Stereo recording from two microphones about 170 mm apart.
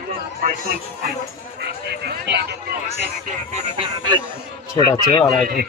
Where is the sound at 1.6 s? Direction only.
75° right (ahead or behind).